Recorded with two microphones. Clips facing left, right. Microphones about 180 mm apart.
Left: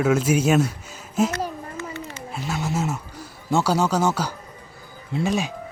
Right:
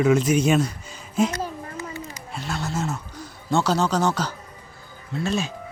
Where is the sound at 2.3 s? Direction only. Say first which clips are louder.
Left 2 dB; 10° left (ahead or behind).